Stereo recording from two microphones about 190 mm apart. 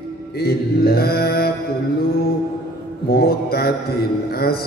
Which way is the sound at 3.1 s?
55° left (ahead or behind).